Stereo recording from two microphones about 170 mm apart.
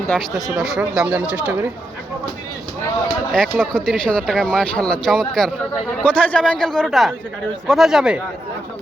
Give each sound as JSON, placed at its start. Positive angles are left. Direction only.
{"t": 0.1, "sound": "speech", "side_deg": 0}
{"t": 3.3, "sound": "speech", "side_deg": 5}